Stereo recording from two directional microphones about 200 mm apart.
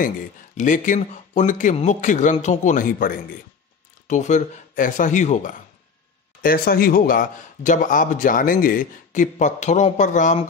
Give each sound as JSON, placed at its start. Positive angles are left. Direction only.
{"t": 0.6, "sound": "a man's voice", "side_deg": 40}
{"t": 2.6, "sound": "a man's voice", "side_deg": 40}
{"t": 6.4, "sound": "a man's voice", "side_deg": 45}